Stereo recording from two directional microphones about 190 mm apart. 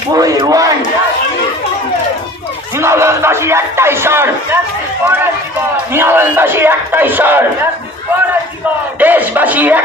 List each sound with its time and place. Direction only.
0.1 s a man's voice: 20° right (ahead or behind)
2.8 s speech: 15° right (ahead or behind)
5.9 s speech: 10° right (ahead or behind)
9.0 s speech: 10° right (ahead or behind)